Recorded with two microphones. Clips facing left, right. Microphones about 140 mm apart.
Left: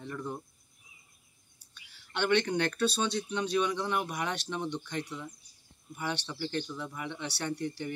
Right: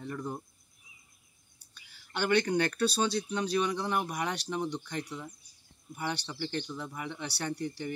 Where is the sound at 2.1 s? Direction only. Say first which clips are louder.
Even; 5° right (ahead or behind).